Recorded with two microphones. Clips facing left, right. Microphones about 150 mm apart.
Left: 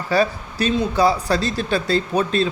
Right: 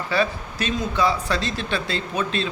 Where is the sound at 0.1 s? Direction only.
35° left (ahead or behind).